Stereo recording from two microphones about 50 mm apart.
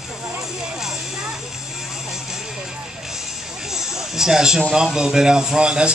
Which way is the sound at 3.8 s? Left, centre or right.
Centre.